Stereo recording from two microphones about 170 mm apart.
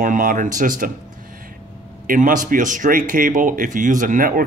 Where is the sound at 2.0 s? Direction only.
50° right (ahead or behind).